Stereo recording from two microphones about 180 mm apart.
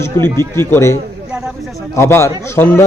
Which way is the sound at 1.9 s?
15° left (ahead or behind).